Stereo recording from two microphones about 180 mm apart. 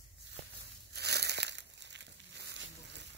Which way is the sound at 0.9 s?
65° right (ahead or behind).